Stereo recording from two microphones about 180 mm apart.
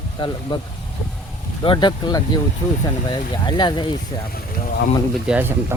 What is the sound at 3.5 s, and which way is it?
Speech, 25° left (ahead or behind).